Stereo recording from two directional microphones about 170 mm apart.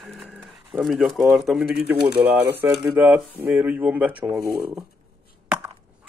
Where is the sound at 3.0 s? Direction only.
10° right (ahead or behind).